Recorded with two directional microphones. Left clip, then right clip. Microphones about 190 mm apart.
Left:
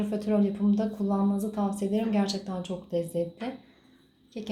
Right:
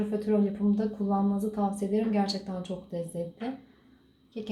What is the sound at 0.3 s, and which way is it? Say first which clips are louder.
A woman's voice: left 1 dB; 30° left (ahead or behind).